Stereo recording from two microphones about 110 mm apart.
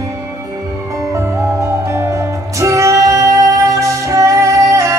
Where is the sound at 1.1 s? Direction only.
25° right (ahead or behind).